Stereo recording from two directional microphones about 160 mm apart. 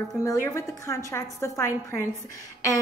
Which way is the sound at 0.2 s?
20° left (ahead or behind).